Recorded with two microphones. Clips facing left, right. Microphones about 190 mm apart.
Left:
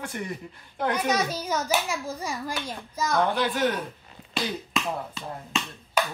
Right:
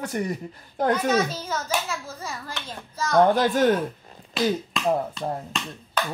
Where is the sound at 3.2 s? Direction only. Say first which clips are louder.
Right 6 dB; 45° right (ahead or behind).